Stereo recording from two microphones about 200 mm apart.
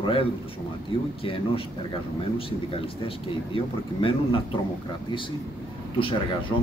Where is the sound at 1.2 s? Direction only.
25° left (ahead or behind).